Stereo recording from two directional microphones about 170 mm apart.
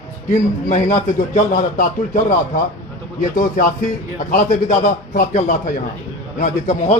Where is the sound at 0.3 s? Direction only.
50° left (ahead or behind).